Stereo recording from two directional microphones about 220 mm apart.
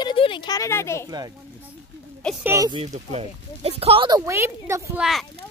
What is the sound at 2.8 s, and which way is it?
Speech, 30° right (ahead or behind).